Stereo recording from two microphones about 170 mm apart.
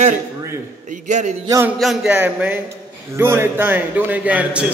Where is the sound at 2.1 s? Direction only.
10° right (ahead or behind).